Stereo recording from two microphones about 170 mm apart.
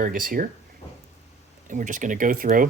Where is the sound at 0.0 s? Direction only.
55° right (ahead or behind).